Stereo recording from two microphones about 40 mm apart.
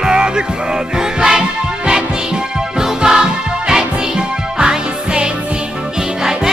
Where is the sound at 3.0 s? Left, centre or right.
Centre.